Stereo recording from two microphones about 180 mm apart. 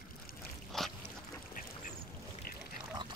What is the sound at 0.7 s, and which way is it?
Dog, centre (ahead or behind).